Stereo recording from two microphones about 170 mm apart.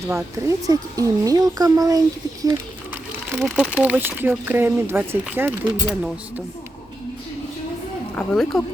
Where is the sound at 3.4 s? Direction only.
5° right (ahead or behind).